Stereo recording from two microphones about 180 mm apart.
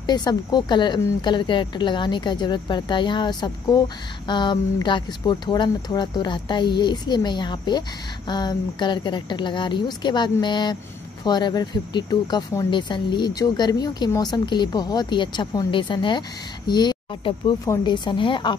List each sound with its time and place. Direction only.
0.0 s speech: 25° left (ahead or behind)